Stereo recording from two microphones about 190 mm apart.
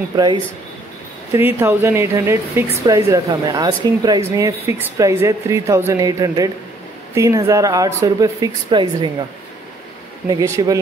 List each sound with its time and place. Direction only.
0.1 s speech: 20° right (ahead or behind)
1.6 s speech: 15° right (ahead or behind)
10.4 s speech: 15° right (ahead or behind)